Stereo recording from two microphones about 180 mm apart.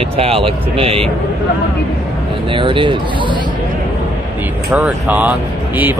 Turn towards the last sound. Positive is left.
turn(degrees=-10)  # may be behind; listen again after turning